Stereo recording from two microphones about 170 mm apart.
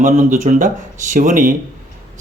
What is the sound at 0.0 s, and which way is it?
Speech, 50° right (ahead or behind).